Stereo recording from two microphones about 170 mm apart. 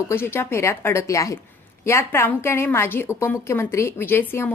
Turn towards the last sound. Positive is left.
turn(degrees=15)  # may be behind; listen again after turning